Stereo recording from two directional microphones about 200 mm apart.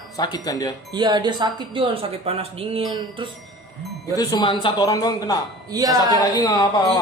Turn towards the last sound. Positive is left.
turn(degrees=20)  # may be behind; listen again after turning